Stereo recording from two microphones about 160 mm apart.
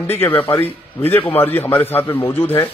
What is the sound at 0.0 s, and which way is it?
A man's voice, 15° left (ahead or behind).